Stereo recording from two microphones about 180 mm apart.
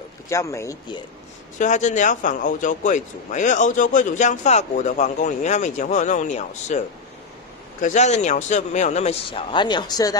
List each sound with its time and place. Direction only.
0.3 s speech: 15° left (ahead or behind)
1.6 s speech: 40° left (ahead or behind)
7.8 s speech: 40° left (ahead or behind); by 10.1 s 20° left (ahead or behind)